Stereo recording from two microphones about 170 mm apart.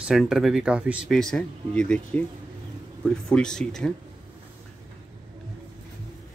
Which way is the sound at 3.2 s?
5° left (ahead or behind).